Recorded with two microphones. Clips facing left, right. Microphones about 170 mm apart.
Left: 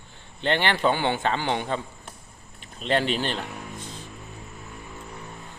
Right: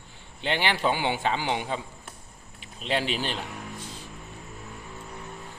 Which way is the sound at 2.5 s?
5° right (ahead or behind).